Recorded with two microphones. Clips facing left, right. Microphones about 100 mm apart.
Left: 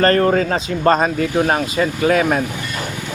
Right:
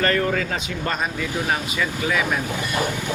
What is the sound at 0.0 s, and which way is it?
Speech, 45° left (ahead or behind).